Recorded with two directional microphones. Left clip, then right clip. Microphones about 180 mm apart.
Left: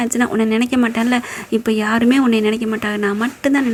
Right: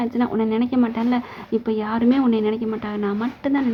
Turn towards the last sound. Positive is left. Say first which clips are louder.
# left 6 dB
turn(degrees=20)  # may be behind; listen again after turning